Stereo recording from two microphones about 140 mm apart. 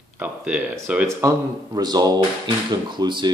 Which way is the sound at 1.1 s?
25° right (ahead or behind).